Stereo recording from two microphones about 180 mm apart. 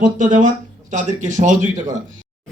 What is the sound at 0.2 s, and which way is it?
A man's voice, 45° right (ahead or behind).